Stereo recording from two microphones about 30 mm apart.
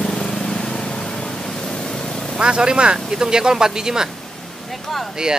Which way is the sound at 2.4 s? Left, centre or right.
Right.